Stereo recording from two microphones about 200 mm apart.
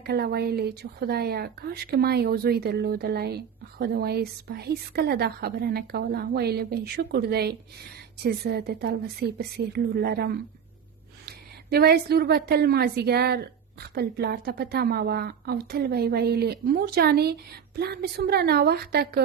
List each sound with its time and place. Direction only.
0.0 s a woman's voice: 50° right (ahead or behind)